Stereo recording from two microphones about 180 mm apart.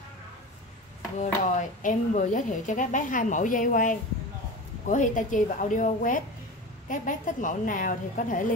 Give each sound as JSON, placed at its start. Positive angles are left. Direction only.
{"t": 1.2, "sound": "speech", "side_deg": 45}